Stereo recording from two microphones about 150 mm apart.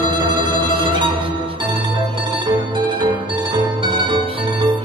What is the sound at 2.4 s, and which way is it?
Music, 35° right (ahead or behind).